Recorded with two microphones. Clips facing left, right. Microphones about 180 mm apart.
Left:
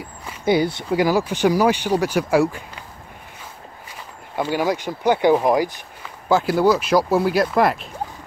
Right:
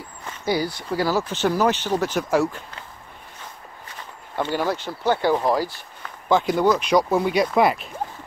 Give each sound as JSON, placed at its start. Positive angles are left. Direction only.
{"t": 0.0, "sound": "a sound", "side_deg": 15}
{"t": 0.8, "sound": "speech", "side_deg": 15}
{"t": 4.4, "sound": "speech", "side_deg": 10}
{"t": 6.2, "sound": "speech", "side_deg": 5}